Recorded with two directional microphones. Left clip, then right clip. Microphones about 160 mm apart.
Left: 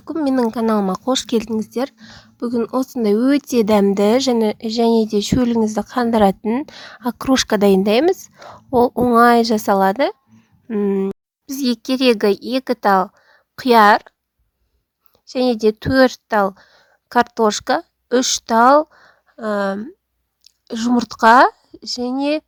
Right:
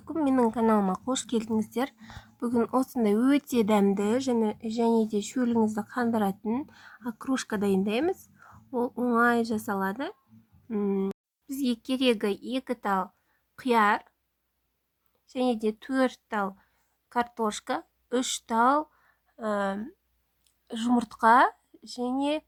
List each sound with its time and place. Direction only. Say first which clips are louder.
0.3 s speech: left 6 dB; 30° left (ahead or behind)
1.5 s speech: left 8 dB; 20° left (ahead or behind); by 6.7 s 40° left (ahead or behind)
6.7 s speech: left 14 dB; 55° left (ahead or behind)
10.7 s speech: left 10 dB; 40° left (ahead or behind)
15.3 s a woman's voice: left 12 dB; 45° left (ahead or behind)